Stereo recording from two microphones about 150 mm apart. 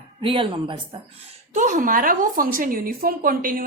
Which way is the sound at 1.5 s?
55° right (ahead or behind).